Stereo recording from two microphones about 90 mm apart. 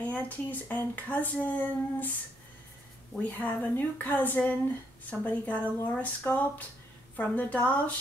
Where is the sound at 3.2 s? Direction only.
20° left (ahead or behind).